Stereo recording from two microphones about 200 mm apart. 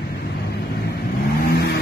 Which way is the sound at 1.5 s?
55° left (ahead or behind).